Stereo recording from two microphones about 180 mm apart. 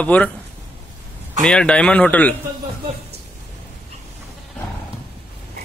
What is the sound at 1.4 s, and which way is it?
Speech, 5° left (ahead or behind).